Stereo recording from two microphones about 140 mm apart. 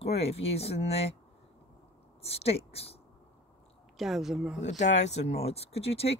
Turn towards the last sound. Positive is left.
turn(degrees=45)  # may be behind; listen again after turning